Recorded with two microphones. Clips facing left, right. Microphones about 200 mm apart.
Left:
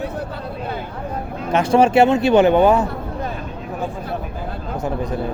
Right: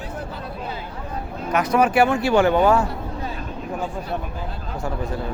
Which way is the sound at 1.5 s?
30° left (ahead or behind).